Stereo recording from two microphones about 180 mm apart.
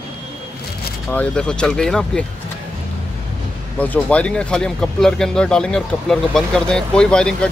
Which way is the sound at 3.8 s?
10° left (ahead or behind).